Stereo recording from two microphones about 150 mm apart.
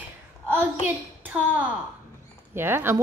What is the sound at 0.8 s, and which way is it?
A child's voice, 10° right (ahead or behind).